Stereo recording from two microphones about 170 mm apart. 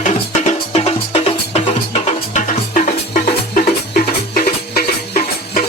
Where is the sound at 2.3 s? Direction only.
50° left (ahead or behind).